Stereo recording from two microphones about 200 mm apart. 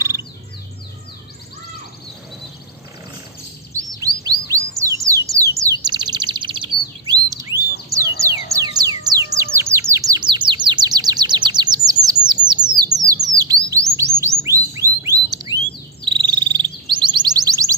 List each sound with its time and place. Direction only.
4.2 s bird: 15° right (ahead or behind)
7.9 s music: 15° right (ahead or behind)
12.7 s bird: 20° right (ahead or behind)
13.3 s chirp: 15° right (ahead or behind)
13.7 s chirp tone: 15° right (ahead or behind)
14.4 s a sound: 15° right (ahead or behind)
16.0 s a sound: 25° right (ahead or behind)